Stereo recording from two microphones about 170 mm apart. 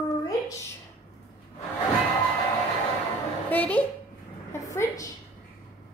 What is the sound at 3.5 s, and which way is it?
Speech, 10° left (ahead or behind).